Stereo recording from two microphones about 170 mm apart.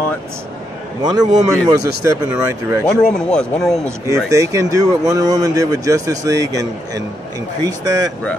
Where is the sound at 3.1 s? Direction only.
5° left (ahead or behind).